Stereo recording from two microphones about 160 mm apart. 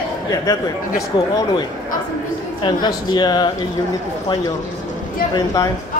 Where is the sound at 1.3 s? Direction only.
25° left (ahead or behind).